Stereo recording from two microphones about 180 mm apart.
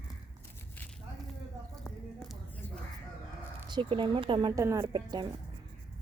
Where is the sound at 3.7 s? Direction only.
30° right (ahead or behind).